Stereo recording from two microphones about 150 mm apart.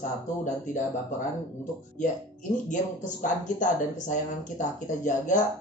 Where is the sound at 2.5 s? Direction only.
55° left (ahead or behind).